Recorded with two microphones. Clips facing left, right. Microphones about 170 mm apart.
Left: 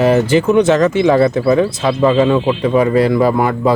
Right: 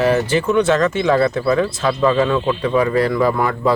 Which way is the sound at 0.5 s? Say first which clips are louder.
Left 2 dB; 20° left (ahead or behind).